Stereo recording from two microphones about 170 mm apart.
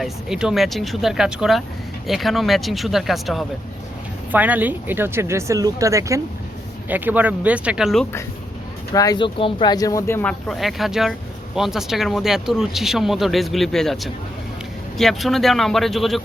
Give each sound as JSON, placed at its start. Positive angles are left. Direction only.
{"t": 0.0, "sound": "speech", "side_deg": -5}
{"t": 8.9, "sound": "speech", "side_deg": 20}
{"t": 10.5, "sound": "speech", "side_deg": 0}